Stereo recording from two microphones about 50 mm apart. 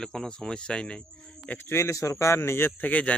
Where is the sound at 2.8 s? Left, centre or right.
Left.